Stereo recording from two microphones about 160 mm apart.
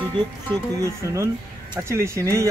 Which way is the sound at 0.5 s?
20° right (ahead or behind).